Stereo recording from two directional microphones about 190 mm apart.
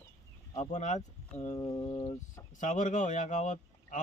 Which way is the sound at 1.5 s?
20° left (ahead or behind).